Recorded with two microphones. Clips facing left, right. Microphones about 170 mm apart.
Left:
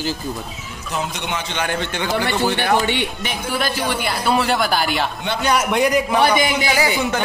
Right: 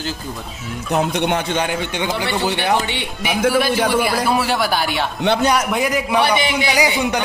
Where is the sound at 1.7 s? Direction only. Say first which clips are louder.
Even; 15° right (ahead or behind).